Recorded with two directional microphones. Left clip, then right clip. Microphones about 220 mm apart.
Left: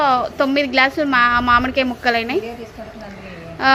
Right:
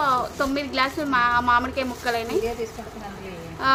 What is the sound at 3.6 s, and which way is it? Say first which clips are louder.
Speech: left 6 dB; 25° left (ahead or behind).